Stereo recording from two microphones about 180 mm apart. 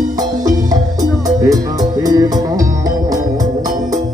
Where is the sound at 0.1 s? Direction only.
20° right (ahead or behind).